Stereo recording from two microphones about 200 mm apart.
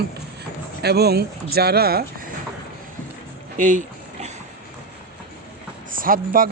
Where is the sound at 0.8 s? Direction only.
55° right (ahead or behind).